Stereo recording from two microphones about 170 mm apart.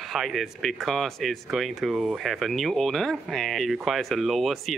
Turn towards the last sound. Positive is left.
turn(degrees=0)  # may be behind; listen again after turning